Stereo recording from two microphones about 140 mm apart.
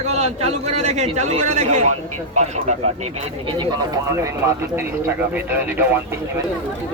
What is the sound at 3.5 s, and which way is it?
Speech, 35° right (ahead or behind).